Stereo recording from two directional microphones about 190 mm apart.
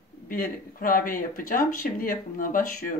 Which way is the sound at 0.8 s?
45° left (ahead or behind).